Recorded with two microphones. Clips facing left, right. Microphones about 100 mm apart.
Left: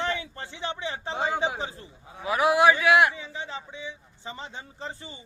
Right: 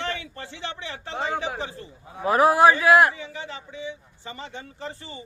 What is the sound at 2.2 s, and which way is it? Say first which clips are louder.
Speech: right 4 dB; 40° right (ahead or behind).